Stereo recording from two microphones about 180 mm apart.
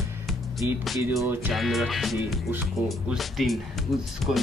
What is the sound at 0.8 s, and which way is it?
Speech, centre (ahead or behind).